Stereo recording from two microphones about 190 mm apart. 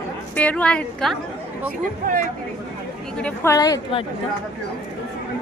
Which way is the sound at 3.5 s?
20° left (ahead or behind).